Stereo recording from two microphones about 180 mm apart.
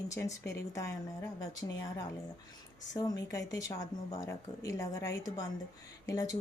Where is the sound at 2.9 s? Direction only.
20° left (ahead or behind).